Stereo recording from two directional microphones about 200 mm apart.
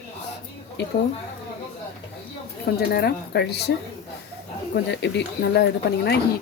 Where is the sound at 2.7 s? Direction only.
50° left (ahead or behind).